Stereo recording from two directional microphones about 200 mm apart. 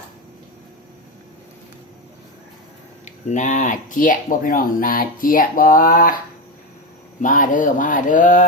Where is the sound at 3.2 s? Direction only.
40° left (ahead or behind).